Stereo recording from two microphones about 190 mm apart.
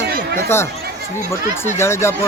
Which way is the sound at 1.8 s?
15° left (ahead or behind).